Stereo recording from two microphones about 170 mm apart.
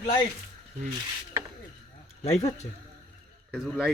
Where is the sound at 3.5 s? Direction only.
Centre (ahead or behind).